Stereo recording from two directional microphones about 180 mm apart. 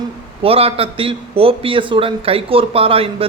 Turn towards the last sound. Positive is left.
turn(degrees=-30)  # may be behind; listen again after turning